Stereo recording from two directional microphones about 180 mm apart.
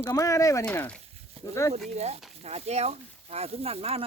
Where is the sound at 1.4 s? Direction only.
30° right (ahead or behind).